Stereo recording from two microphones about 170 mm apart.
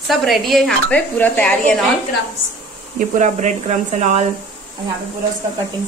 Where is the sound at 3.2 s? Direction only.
45° right (ahead or behind).